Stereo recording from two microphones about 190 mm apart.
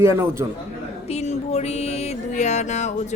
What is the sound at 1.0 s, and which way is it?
Music, 35° left (ahead or behind).